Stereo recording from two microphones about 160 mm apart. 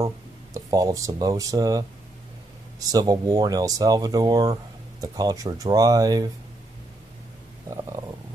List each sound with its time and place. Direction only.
0.7 s speech: 20° right (ahead or behind)
2.9 s speech: 25° right (ahead or behind)